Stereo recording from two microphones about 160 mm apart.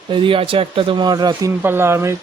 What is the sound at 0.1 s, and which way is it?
Speech, 30° right (ahead or behind).